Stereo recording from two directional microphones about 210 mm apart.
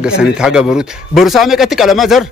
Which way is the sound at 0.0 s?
5° right (ahead or behind).